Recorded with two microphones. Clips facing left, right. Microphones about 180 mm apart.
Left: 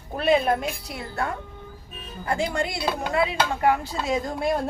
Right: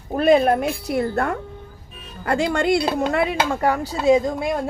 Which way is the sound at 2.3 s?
80° right.